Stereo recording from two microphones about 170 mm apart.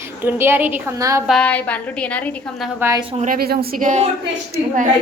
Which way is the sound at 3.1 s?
50° right (ahead or behind).